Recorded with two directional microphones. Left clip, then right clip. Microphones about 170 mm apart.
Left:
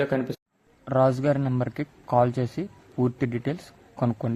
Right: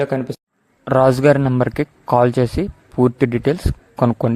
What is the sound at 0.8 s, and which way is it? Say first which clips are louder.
Speech: right 9 dB; 60° right (ahead or behind).